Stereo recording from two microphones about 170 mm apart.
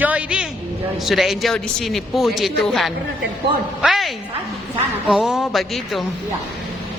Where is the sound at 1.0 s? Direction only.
Centre (ahead or behind).